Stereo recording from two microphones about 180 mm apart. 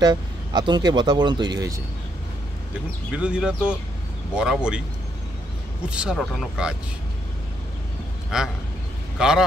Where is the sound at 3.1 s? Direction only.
5° right (ahead or behind).